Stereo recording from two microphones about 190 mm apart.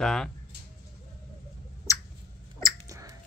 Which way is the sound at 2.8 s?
15° right (ahead or behind).